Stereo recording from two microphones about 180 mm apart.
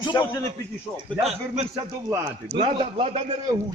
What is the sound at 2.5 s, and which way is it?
A man's voice, 30° right (ahead or behind).